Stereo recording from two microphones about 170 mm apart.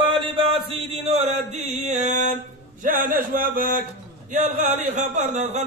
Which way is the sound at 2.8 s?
50° right (ahead or behind).